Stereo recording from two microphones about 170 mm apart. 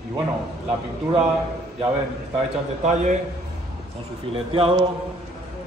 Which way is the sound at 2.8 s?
45° right (ahead or behind).